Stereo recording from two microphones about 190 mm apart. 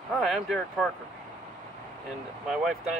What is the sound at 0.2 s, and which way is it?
Speech, centre (ahead or behind).